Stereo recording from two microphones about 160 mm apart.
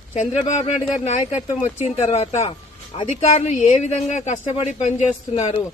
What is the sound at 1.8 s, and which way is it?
A woman's voice, 45° left (ahead or behind).